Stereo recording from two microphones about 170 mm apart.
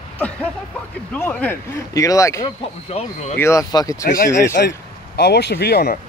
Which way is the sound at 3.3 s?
15° left (ahead or behind).